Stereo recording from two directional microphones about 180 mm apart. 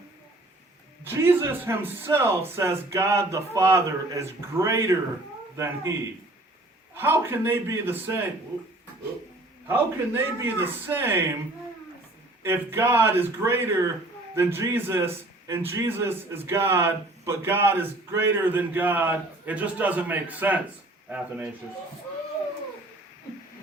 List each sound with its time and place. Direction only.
1.0 s a man's voice: 15° right (ahead or behind)
6.9 s a man's voice: 10° right (ahead or behind)
9.6 s a man's voice: 10° right (ahead or behind)
12.4 s a man's voice: 15° right (ahead or behind)